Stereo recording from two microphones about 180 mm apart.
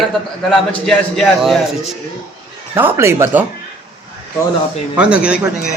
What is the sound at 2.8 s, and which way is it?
Speech, 15° right (ahead or behind).